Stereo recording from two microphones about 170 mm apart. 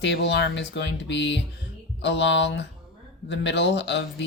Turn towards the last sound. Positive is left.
turn(degrees=90)